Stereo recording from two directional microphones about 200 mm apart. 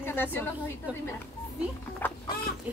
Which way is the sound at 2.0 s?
10° left (ahead or behind).